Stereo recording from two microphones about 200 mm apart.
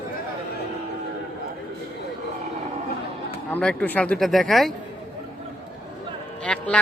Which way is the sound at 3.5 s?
5° left (ahead or behind).